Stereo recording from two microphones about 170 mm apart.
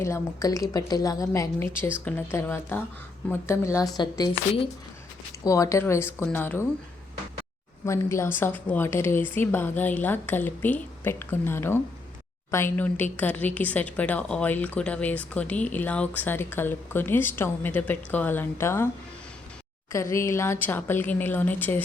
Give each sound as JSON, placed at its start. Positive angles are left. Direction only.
{"t": 0.0, "sound": "a woman's voice", "side_deg": 20}
{"t": 5.5, "sound": "a woman's voice", "side_deg": 20}
{"t": 7.9, "sound": "a woman's voice", "side_deg": 15}
{"t": 19.9, "sound": "a woman's voice", "side_deg": 15}